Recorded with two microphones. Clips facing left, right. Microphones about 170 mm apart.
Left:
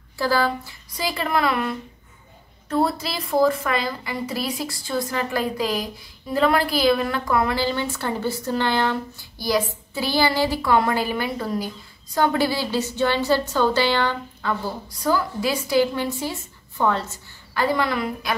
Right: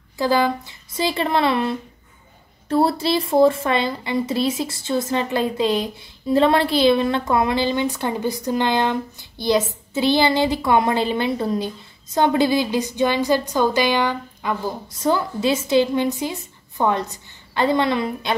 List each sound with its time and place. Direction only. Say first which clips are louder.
0.2 s a woman's voice: right 3 dB; 20° right (ahead or behind)